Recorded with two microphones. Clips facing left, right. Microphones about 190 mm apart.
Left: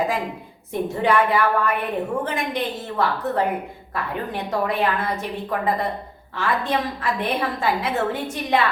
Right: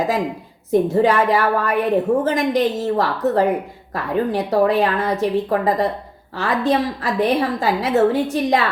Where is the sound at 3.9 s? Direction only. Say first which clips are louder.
Right 8 dB; 40° right (ahead or behind).